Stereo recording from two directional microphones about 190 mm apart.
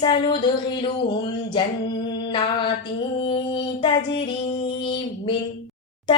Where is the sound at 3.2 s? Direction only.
25° left (ahead or behind).